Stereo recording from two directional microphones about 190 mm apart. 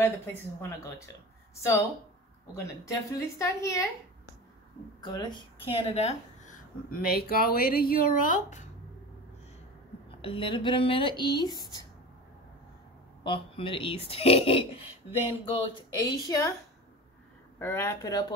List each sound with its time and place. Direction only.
0.6 s a woman's voice: 15° left (ahead or behind); by 8.6 s 40° left (ahead or behind)
10.2 s speech: 25° left (ahead or behind)
13.2 s speech: 25° left (ahead or behind)
17.6 s speech: 15° left (ahead or behind)